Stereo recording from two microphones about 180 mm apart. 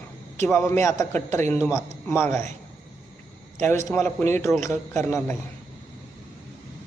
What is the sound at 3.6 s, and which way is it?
A man's voice, 15° left (ahead or behind).